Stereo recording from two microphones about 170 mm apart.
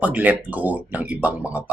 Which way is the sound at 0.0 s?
10° right (ahead or behind).